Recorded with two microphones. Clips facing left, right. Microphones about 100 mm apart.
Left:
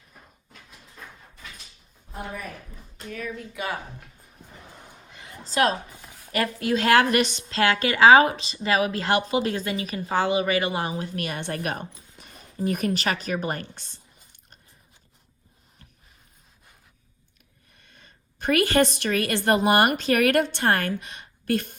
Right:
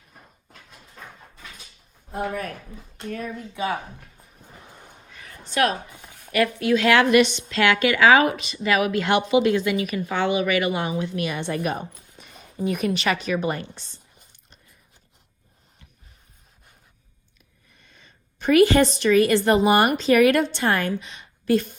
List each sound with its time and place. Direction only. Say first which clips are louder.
3.5 s speech: right 6 dB; 20° right (ahead or behind)
5.1 s a sound: left 1 dB; 20° left (ahead or behind)
5.5 s a woman's voice: even; 30° left (ahead or behind)
6.0 s a sound: right 1 dB; 20° right (ahead or behind)
6.3 s a woman's voice: right 4 dB; 35° left (ahead or behind); by 13.9 s 50° left (ahead or behind)
17.7 s a woman's voice: even; 55° left (ahead or behind)